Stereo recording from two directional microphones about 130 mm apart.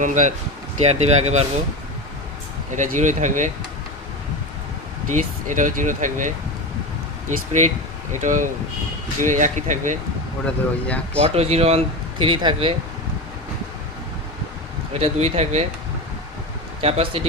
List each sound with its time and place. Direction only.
0.0 s speech: 75° right (ahead or behind)
0.9 s speech: 55° right (ahead or behind)
2.7 s speech: 70° right (ahead or behind)
5.1 s speech: 80° right
7.3 s speech: 65° right (ahead or behind)
8.1 s speech: 80° right
10.4 s speech: 10° left (ahead or behind)
11.2 s speech: 55° right (ahead or behind)
12.2 s speech: 35° right (ahead or behind)
14.9 s speech: 55° right (ahead or behind)
16.8 s speech: 50° right (ahead or behind)